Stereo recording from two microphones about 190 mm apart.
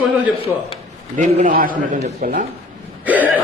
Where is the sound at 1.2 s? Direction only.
40° right (ahead or behind).